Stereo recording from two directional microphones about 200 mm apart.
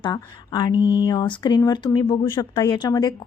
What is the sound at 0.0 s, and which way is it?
Speech, 20° left (ahead or behind).